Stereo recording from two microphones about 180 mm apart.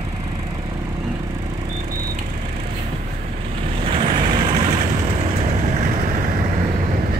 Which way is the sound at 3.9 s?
30° right (ahead or behind).